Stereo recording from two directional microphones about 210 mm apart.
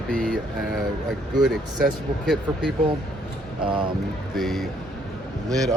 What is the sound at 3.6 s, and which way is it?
Speech, 25° right (ahead or behind).